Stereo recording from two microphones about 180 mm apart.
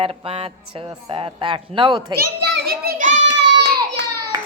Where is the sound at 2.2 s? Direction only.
60° right (ahead or behind).